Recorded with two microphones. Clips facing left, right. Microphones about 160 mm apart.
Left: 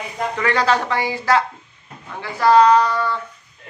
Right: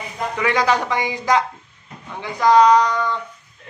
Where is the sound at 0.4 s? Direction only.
15° right (ahead or behind).